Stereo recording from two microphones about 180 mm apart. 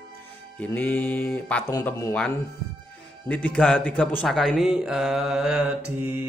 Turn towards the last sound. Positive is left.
turn(degrees=-10)  # may be behind; listen again after turning